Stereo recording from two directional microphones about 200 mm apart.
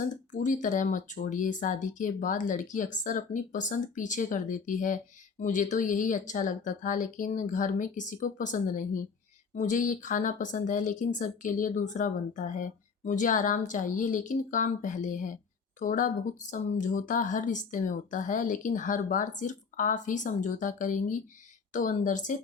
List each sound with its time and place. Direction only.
0.3 s speech: 40° left (ahead or behind)